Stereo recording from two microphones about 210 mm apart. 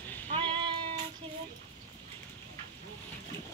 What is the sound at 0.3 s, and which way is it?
Cat, 25° right (ahead or behind).